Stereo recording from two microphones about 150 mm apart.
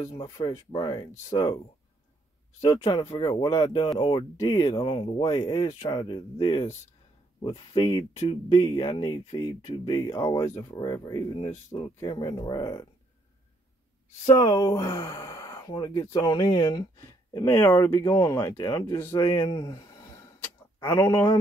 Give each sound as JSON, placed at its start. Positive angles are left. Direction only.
{"t": 0.0, "sound": "speech", "side_deg": 25}
{"t": 2.6, "sound": "speech", "side_deg": 30}
{"t": 14.3, "sound": "speech", "side_deg": 25}
{"t": 19.3, "sound": "a sound", "side_deg": 25}